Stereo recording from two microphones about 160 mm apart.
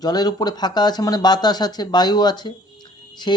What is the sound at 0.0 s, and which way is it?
Speech, 25° left (ahead or behind).